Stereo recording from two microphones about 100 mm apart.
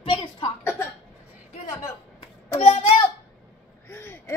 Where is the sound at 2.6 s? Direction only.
75° left (ahead or behind).